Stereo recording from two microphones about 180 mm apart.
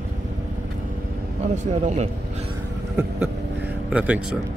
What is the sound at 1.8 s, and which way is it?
Speech, 40° right (ahead or behind).